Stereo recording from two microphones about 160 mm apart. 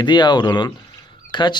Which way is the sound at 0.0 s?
25° left (ahead or behind).